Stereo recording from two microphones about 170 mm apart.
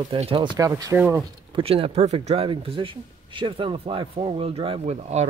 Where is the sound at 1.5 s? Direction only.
35° right (ahead or behind).